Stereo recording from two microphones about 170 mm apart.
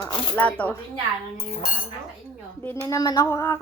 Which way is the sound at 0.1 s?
10° left (ahead or behind).